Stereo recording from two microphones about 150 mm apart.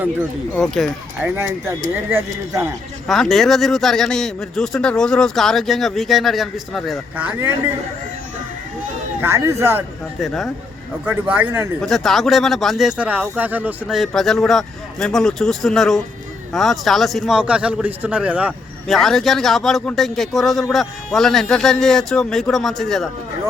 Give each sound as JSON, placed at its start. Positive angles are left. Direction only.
{"t": 0.5, "sound": "speech", "side_deg": 5}
{"t": 1.2, "sound": "speech", "side_deg": -15}
{"t": 3.1, "sound": "speech", "side_deg": 0}
{"t": 9.2, "sound": "speech", "side_deg": -20}
{"t": 10.2, "sound": "speech", "side_deg": 0}
{"t": 11.0, "sound": "speech", "side_deg": -10}
{"t": 11.8, "sound": "speech", "side_deg": 0}
{"t": 13.8, "sound": "speech", "side_deg": 0}